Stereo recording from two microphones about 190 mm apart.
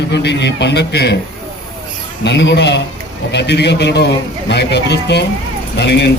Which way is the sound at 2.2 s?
65° left (ahead or behind).